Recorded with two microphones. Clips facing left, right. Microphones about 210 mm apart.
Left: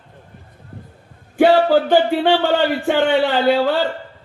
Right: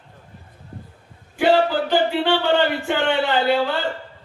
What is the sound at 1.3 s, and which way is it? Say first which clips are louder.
Music: left 5 dB; 50° left (ahead or behind).